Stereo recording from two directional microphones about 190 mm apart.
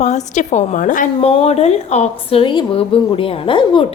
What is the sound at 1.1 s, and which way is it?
A woman's voice, 30° left (ahead or behind).